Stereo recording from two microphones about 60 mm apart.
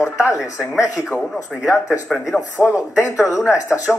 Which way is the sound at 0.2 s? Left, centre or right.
Centre.